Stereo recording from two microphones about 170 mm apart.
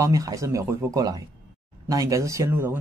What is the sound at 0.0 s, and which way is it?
Speech, 20° right (ahead or behind).